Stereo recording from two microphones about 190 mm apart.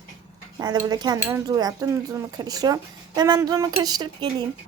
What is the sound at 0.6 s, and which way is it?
Speech, 20° right (ahead or behind).